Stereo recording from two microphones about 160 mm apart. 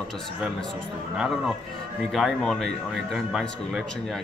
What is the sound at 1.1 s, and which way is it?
Speech, centre (ahead or behind).